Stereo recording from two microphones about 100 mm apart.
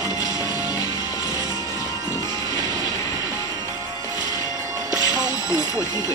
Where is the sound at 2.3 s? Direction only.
35° left (ahead or behind).